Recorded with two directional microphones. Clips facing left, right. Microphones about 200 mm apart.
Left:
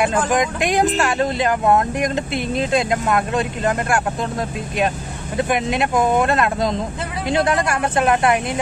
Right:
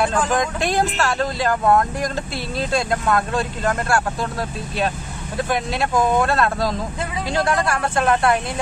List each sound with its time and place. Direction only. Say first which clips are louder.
0.0 s speech: left 2 dB; 15° left (ahead or behind)
5.5 s speech: left 2 dB; 20° left (ahead or behind)